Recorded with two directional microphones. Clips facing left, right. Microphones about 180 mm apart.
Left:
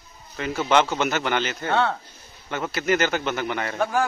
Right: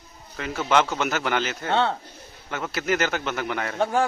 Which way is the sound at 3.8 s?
25° right (ahead or behind).